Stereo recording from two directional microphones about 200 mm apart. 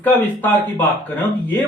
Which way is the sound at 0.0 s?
10° left (ahead or behind).